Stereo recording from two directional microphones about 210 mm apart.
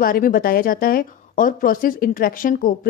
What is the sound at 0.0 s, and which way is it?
Speech, 45° left (ahead or behind).